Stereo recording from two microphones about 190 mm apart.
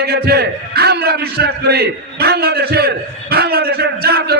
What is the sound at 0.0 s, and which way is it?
A man's voice, 55° right (ahead or behind).